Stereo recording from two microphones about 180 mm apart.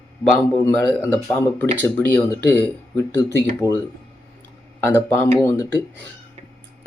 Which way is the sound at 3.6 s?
15° right (ahead or behind).